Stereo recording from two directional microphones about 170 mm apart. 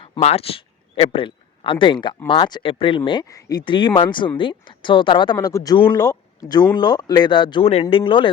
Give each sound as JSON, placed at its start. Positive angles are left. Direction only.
{"t": 0.0, "sound": "speech", "side_deg": 35}